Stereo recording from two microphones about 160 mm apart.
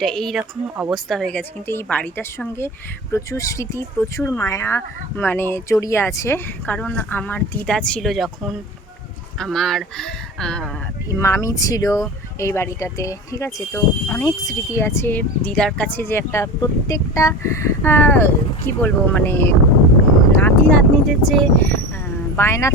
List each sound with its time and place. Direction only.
0.0 s speech: centre (ahead or behind)
11.1 s speech: 20° left (ahead or behind)
20.3 s a sound: 10° left (ahead or behind)
21.2 s speech: 5° left (ahead or behind)
22.4 s speech: 15° left (ahead or behind)